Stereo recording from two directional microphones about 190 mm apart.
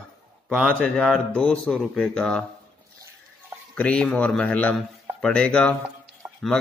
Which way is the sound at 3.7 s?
5° left (ahead or behind).